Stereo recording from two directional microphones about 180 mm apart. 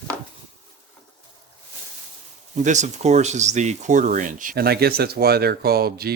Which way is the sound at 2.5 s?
40° right (ahead or behind).